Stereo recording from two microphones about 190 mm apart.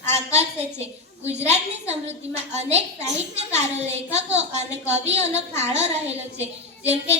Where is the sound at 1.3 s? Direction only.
35° right (ahead or behind).